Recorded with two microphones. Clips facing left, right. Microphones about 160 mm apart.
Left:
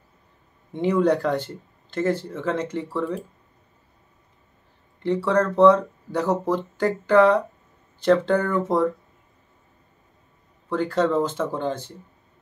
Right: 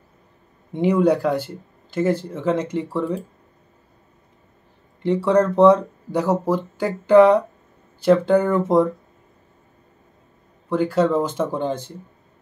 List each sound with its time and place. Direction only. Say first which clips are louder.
0.7 s speech: right 3 dB; 10° right (ahead or behind)
5.0 s speech: right 4 dB; 15° right (ahead or behind)
10.7 s speech: right 3 dB; 10° right (ahead or behind)